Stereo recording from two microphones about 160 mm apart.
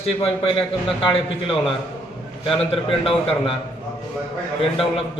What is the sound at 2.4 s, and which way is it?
A man's voice, 35° left (ahead or behind).